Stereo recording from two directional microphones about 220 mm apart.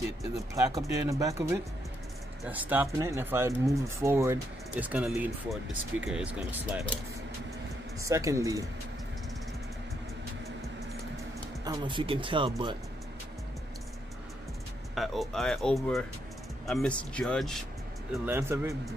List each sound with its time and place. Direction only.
0.2 s speech: 15° right (ahead or behind)
8.0 s speech: 15° right (ahead or behind)
11.6 s speech: 20° right (ahead or behind)
15.0 s speech: centre (ahead or behind)
18.1 s speech: 10° right (ahead or behind)